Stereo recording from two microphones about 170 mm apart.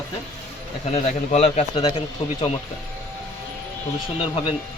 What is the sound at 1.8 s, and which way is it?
Speech, 30° left (ahead or behind).